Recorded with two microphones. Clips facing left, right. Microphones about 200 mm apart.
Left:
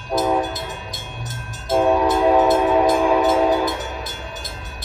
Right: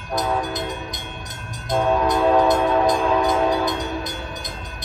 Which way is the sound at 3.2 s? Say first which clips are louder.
Left 2 dB; 15° right (ahead or behind).